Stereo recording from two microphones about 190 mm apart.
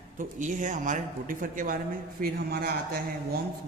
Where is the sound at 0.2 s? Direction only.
45° right (ahead or behind).